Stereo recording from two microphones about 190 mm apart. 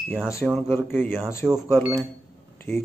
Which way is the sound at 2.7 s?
10° left (ahead or behind).